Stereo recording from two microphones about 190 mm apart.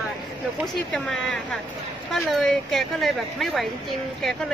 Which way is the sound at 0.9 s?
5° left (ahead or behind).